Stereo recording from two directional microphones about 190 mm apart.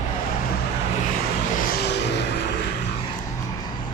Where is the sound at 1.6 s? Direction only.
65° left (ahead or behind).